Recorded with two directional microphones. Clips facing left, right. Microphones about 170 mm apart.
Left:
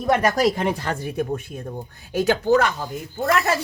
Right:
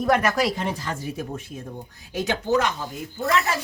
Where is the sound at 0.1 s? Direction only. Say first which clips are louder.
Left 2 dB; 30° left (ahead or behind).